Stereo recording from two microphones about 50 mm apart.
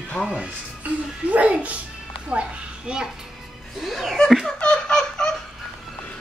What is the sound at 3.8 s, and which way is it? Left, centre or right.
Speech, centre.